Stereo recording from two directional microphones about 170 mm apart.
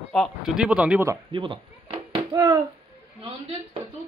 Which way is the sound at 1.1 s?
30° right (ahead or behind).